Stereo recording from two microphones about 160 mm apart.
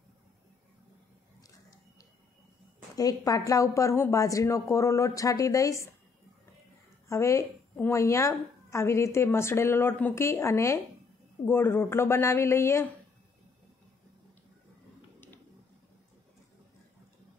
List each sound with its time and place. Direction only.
3.0 s speech: 20° left (ahead or behind)
7.1 s a woman's voice: 20° left (ahead or behind)